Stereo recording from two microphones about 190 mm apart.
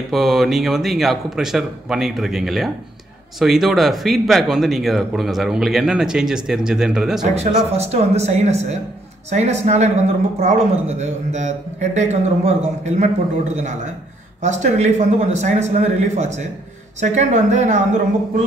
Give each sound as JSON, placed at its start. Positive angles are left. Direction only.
{"t": 0.1, "sound": "speech", "side_deg": 0}
{"t": 7.3, "sound": "speech", "side_deg": -35}
{"t": 14.4, "sound": "speech", "side_deg": -40}